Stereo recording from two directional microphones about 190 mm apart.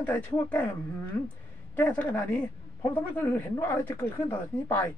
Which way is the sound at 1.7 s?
10° left (ahead or behind).